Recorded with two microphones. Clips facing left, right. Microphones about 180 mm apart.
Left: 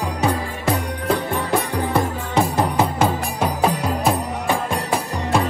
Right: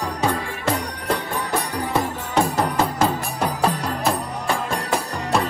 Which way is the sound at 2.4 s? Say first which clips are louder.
Left 1 dB; 5° left (ahead or behind).